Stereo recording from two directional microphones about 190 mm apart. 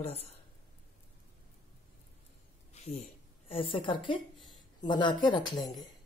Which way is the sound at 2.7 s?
35° left (ahead or behind).